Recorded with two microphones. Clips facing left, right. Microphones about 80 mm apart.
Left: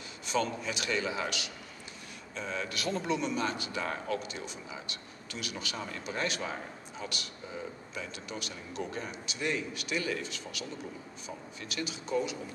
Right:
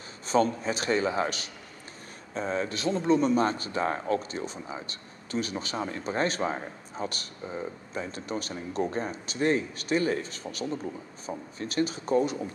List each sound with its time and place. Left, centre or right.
0.3 s speech: right